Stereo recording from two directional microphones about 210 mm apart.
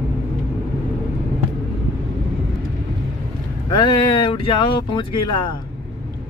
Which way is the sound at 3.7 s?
20° left (ahead or behind).